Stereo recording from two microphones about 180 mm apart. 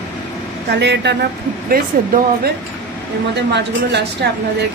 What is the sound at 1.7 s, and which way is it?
Speech, 55° right (ahead or behind).